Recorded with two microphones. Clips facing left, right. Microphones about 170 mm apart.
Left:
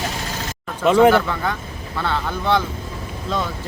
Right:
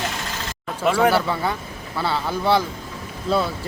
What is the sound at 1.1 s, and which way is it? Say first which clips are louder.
Speech: left 2 dB; 10° right (ahead or behind).